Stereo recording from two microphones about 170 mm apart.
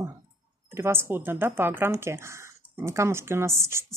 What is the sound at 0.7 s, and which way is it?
A woman's voice, 15° right (ahead or behind).